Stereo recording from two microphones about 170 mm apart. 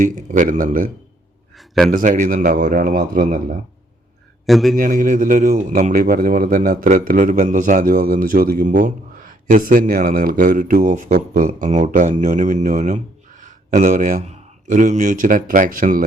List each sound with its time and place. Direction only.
0.0 s a man's voice: 50° right (ahead or behind)
1.5 s a sound: centre (ahead or behind)
1.9 s a man's voice: 50° right (ahead or behind)
4.4 s a man's voice: centre (ahead or behind)
4.8 s a man's voice: 50° right (ahead or behind)